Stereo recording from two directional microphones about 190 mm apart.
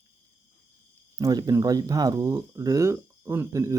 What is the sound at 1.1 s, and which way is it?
Speech, 20° right (ahead or behind).